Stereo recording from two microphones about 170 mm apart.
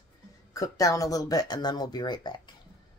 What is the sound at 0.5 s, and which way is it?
Speech, 20° left (ahead or behind).